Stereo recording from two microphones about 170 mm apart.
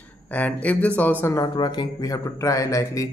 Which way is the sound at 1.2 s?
20° left (ahead or behind).